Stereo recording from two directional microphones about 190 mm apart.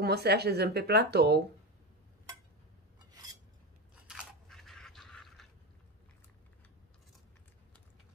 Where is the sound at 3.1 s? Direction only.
20° right (ahead or behind).